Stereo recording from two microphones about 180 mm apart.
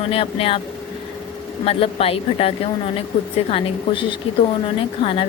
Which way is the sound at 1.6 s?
30° left (ahead or behind).